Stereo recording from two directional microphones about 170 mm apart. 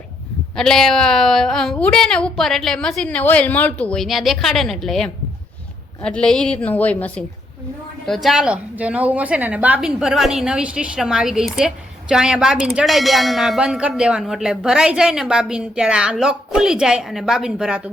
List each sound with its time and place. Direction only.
0.5 s a woman's voice: 5° left (ahead or behind)